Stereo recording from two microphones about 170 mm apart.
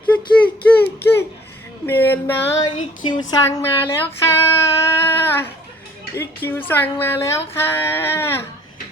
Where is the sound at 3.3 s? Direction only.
15° left (ahead or behind).